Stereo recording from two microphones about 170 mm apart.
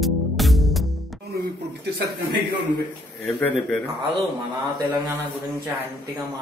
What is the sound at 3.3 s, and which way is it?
Speech, 10° left (ahead or behind).